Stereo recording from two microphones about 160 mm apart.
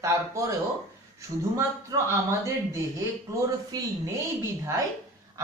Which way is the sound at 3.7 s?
25° right (ahead or behind).